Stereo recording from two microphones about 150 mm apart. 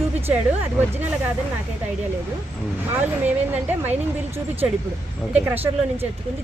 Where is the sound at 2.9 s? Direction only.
10° right (ahead or behind).